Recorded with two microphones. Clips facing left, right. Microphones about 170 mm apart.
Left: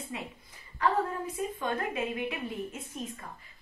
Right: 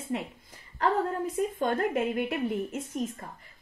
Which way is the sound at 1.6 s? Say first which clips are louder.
Right 4 dB; 50° right (ahead or behind).